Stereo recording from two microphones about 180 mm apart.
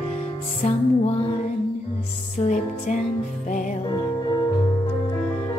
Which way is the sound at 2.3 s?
45° left (ahead or behind).